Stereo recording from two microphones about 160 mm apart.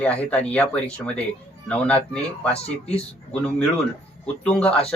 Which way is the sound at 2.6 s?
40° left (ahead or behind).